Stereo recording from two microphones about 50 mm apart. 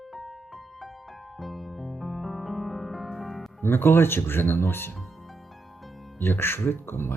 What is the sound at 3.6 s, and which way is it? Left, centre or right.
Speech, left.